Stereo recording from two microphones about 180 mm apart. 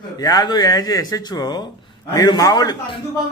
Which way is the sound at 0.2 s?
25° left (ahead or behind).